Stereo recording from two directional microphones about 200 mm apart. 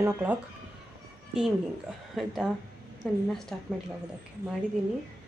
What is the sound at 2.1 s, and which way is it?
Speech, centre (ahead or behind).